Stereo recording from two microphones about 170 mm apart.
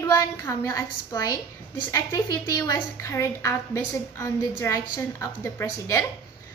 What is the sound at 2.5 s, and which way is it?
A woman's voice, 15° left (ahead or behind).